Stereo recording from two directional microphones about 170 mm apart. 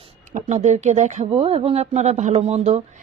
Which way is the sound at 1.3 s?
35° right (ahead or behind).